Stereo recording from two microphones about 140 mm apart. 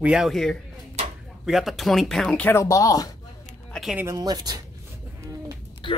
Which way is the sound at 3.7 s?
Centre (ahead or behind).